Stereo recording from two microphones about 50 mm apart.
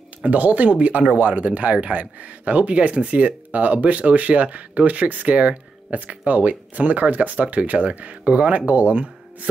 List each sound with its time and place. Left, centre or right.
0.2 s speech: right